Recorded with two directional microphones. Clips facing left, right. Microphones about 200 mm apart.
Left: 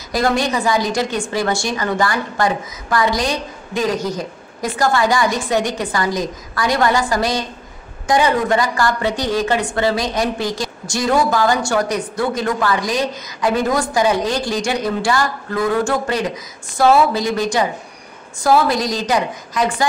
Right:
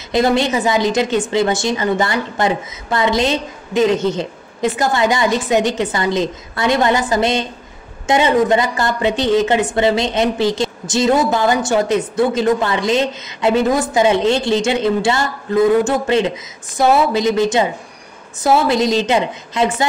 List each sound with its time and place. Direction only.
0.1 s speech: 25° right (ahead or behind)